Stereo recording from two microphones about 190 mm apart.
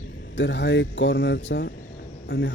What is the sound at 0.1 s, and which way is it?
Speech, 65° left (ahead or behind).